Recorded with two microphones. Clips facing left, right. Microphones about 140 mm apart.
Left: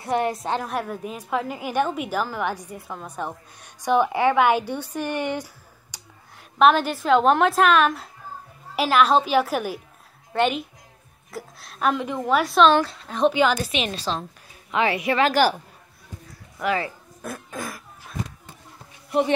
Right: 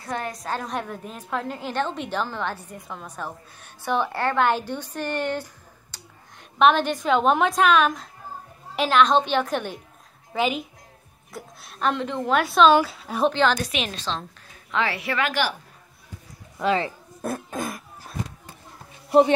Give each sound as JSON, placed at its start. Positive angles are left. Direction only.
{"t": 0.0, "sound": "a woman's voice", "side_deg": 25}
{"t": 0.6, "sound": "a woman's voice", "side_deg": 5}
{"t": 13.3, "sound": "a woman's voice", "side_deg": 10}
{"t": 15.2, "sound": "a woman's voice", "side_deg": 40}
{"t": 16.5, "sound": "speech", "side_deg": -25}